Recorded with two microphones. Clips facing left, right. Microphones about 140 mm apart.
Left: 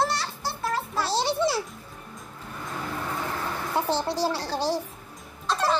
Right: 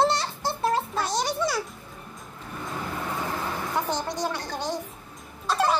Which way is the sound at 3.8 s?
30° left (ahead or behind).